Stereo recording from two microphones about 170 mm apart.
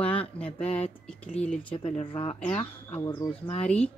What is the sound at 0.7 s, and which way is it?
Speech, 35° left (ahead or behind).